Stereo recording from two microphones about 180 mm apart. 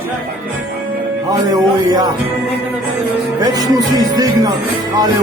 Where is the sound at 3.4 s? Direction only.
20° right (ahead or behind).